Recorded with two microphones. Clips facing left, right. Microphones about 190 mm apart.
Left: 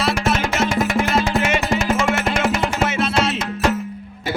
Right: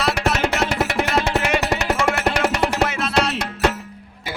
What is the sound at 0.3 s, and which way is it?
Music, 65° right (ahead or behind).